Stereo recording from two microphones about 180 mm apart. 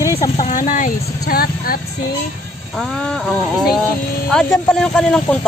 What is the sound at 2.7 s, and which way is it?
Speech, 5° left (ahead or behind).